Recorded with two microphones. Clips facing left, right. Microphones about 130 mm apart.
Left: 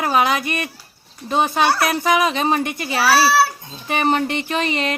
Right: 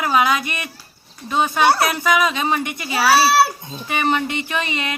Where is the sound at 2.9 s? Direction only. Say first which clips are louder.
Right 1 dB; 20° right (ahead or behind).